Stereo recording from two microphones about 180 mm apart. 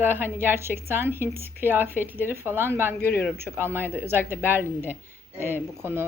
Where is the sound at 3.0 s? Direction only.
60° left (ahead or behind).